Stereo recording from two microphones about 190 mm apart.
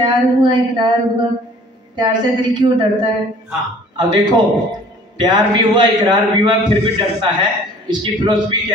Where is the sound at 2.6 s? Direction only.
25° right (ahead or behind).